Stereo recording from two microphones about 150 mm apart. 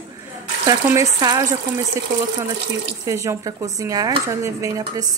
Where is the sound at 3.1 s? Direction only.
20° right (ahead or behind).